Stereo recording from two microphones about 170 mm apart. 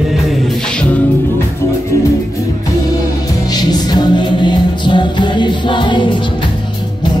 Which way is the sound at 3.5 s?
25° left (ahead or behind).